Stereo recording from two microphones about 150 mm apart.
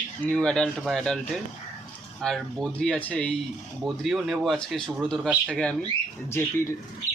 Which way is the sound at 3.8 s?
Centre (ahead or behind).